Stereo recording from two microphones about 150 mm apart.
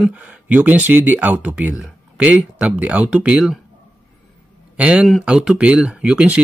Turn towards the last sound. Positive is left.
turn(degrees=-10)  # may be behind; listen again after turning